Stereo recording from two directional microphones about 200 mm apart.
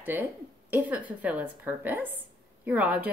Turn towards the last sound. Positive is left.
turn(degrees=-5)  # may be behind; listen again after turning